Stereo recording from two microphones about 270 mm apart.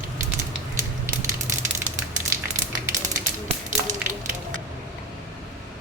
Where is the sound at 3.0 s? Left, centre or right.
Right.